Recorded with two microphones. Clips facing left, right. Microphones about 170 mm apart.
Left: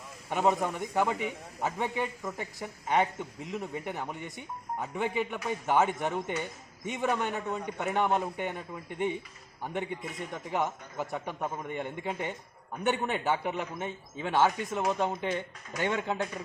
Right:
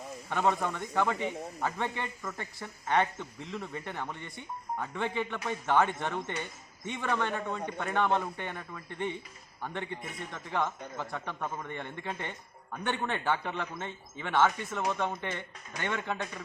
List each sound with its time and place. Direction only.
0.3 s a man's voice: 15° left (ahead or behind)